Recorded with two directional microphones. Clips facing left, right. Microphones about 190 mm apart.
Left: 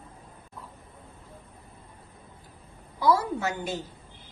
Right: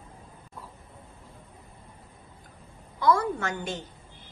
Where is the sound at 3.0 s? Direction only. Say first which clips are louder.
Even; 10° left (ahead or behind).